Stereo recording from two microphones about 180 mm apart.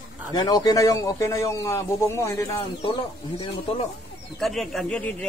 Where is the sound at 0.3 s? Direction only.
20° left (ahead or behind).